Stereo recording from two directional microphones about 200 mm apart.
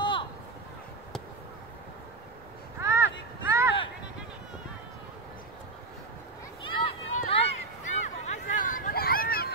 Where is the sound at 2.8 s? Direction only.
15° right (ahead or behind).